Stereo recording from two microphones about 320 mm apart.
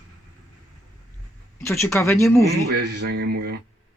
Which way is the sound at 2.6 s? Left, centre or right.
Right.